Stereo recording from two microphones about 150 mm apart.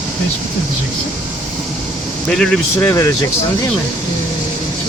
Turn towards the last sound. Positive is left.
turn(degrees=20)  # may be behind; listen again after turning